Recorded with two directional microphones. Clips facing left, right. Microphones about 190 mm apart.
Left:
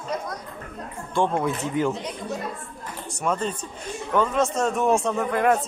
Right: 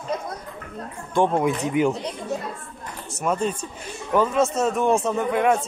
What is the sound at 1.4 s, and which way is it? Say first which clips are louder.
Speech: right 3 dB; 15° right (ahead or behind).